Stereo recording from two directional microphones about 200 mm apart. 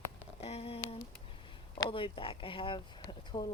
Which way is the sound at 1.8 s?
25° left (ahead or behind).